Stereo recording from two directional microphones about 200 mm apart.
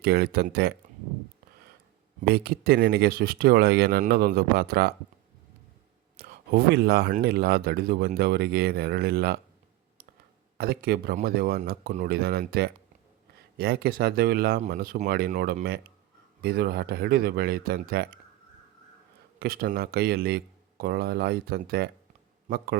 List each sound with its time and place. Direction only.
0.0 s speech: 50° right (ahead or behind)
2.2 s speech: 50° right (ahead or behind)
6.1 s a sound: 50° right (ahead or behind)
7.2 s speech: 50° right (ahead or behind)
10.6 s speech: 50° right (ahead or behind)
19.4 s speech: 50° right (ahead or behind)